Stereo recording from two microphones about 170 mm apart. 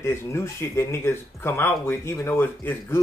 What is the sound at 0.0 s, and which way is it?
Speech, 15° left (ahead or behind).